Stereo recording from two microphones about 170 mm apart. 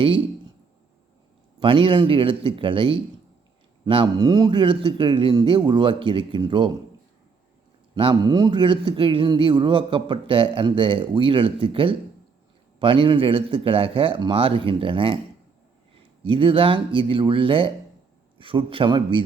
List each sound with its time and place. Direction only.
1.5 s a man's voice: 30° right (ahead or behind)
7.9 s a man's voice: 30° right (ahead or behind)
16.2 s speech: 30° right (ahead or behind)